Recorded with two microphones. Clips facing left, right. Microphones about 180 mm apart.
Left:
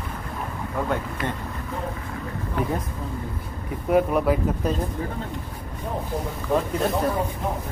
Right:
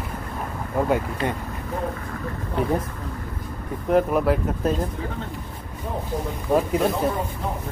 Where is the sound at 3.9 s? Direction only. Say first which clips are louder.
Right 1 dB; centre (ahead or behind).